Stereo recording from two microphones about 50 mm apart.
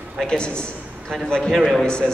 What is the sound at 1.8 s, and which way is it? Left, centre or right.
Speech, centre.